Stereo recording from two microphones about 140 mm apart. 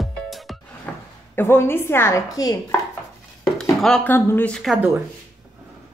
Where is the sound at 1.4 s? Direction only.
15° left (ahead or behind).